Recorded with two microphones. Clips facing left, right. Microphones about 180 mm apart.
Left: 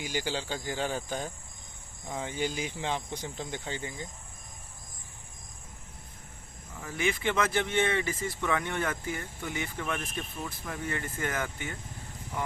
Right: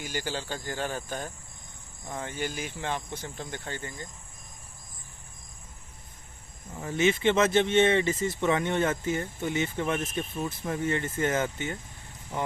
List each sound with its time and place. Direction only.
0.0 s speech: 10° left (ahead or behind)
6.8 s speech: 25° right (ahead or behind)